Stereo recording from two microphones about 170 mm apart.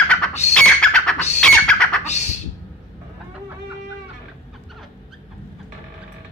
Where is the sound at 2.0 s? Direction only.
40° left (ahead or behind).